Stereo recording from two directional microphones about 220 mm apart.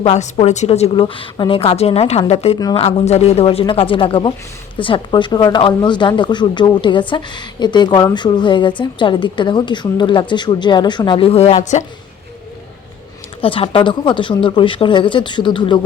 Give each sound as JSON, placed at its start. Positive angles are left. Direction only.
{"t": 0.0, "sound": "a woman's voice", "side_deg": 30}
{"t": 13.4, "sound": "a woman's voice", "side_deg": 25}